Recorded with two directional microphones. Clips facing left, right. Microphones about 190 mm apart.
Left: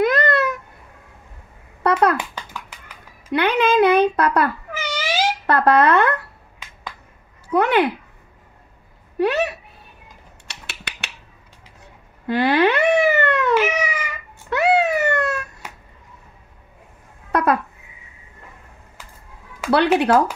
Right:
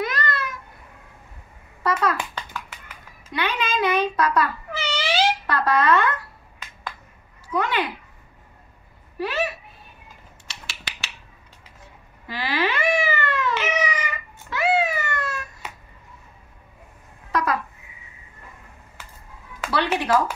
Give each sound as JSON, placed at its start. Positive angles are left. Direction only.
{"t": 0.0, "sound": "babbling", "side_deg": 65}
{"t": 1.8, "sound": "a sound", "side_deg": 60}
{"t": 3.3, "sound": "a child's voice", "side_deg": 60}
{"t": 4.7, "sound": "cat", "side_deg": 15}
{"t": 5.5, "sound": "a child's voice", "side_deg": 60}
{"t": 7.5, "sound": "a child's voice", "side_deg": 65}
{"t": 9.2, "sound": "speech", "side_deg": 70}
{"t": 10.5, "sound": "a sound", "side_deg": 60}
{"t": 12.3, "sound": "cat", "side_deg": 65}
{"t": 13.6, "sound": "cat", "side_deg": 10}
{"t": 14.5, "sound": "a sound", "side_deg": 65}
{"t": 17.3, "sound": "a sound", "side_deg": 55}
{"t": 19.7, "sound": "a child's voice", "side_deg": 65}